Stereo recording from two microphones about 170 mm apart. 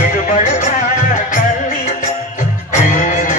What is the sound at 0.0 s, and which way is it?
Music, 50° left (ahead or behind).